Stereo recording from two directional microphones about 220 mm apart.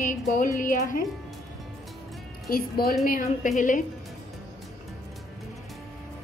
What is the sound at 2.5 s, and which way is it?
A woman's voice, 40° left (ahead or behind).